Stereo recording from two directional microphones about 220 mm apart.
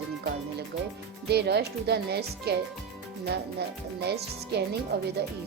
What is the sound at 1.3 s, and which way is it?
Speech, 50° right (ahead or behind).